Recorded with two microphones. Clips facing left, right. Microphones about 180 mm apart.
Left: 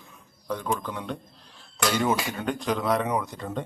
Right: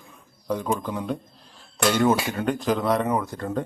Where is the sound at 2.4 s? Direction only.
Centre (ahead or behind).